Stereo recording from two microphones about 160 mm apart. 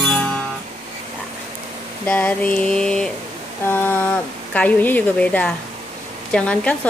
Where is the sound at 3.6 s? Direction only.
15° left (ahead or behind).